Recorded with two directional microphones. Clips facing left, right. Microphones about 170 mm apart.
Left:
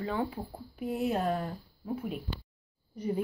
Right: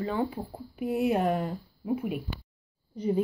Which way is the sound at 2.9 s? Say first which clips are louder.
Right 5 dB; 25° right (ahead or behind).